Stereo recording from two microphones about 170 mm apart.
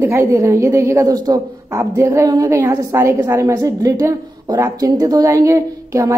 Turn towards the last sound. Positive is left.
turn(degrees=-20)  # may be behind; listen again after turning